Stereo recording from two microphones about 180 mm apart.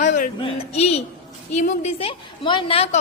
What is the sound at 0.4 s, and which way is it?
A woman's voice, 35° left (ahead or behind).